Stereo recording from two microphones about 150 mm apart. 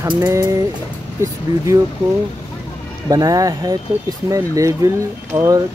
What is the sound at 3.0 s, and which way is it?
Speech, 25° right (ahead or behind).